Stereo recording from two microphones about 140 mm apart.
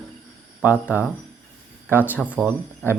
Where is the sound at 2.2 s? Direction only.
10° right (ahead or behind).